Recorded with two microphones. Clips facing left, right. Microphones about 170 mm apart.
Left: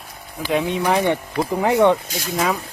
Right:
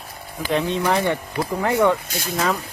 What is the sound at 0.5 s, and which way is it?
Speech, 15° left (ahead or behind).